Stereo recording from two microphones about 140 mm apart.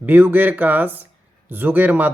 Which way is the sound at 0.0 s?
15° right (ahead or behind).